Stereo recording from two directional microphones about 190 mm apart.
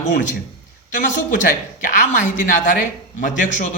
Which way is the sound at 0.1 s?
45° left (ahead or behind).